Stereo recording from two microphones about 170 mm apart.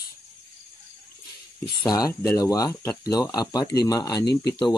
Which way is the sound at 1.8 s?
20° left (ahead or behind).